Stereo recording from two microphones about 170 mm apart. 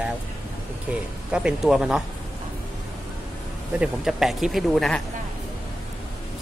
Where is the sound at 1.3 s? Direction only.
5° right (ahead or behind).